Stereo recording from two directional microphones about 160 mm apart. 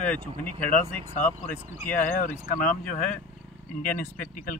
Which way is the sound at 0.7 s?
55° left (ahead or behind).